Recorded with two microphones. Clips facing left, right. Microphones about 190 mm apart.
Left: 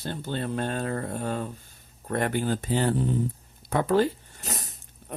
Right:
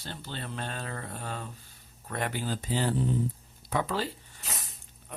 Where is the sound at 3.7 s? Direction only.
50° left (ahead or behind).